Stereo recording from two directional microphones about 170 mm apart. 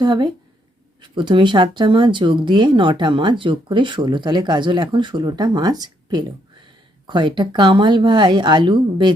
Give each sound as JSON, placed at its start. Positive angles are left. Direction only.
{"t": 0.0, "sound": "speech", "side_deg": -25}